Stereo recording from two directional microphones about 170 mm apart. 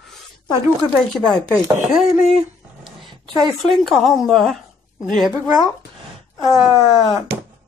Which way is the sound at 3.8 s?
Centre (ahead or behind).